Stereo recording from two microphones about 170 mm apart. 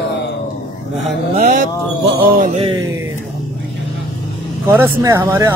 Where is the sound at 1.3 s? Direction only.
50° right (ahead or behind).